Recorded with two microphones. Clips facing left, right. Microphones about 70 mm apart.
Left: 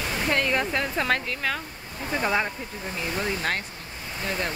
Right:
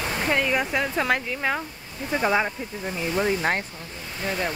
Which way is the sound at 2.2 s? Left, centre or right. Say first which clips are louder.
Right 3 dB; centre.